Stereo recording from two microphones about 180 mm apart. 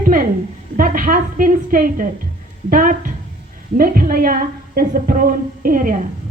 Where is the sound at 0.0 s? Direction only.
50° right (ahead or behind).